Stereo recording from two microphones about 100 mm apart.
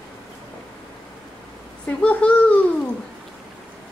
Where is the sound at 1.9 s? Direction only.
15° left (ahead or behind).